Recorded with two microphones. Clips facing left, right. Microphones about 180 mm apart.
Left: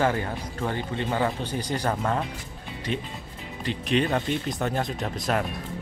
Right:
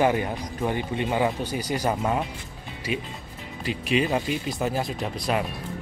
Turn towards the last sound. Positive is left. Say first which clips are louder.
# even
turn(degrees=0)  # may be behind; listen again after turning